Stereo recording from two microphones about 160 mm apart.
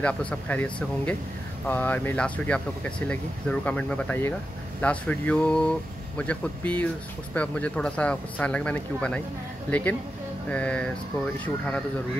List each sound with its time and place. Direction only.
0.0 s speech: 10° left (ahead or behind)